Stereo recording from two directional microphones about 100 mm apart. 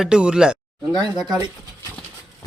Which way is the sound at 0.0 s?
10° right (ahead or behind).